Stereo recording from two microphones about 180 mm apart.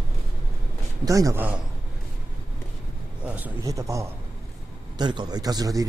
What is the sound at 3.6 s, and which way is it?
A man's voice, 15° right (ahead or behind).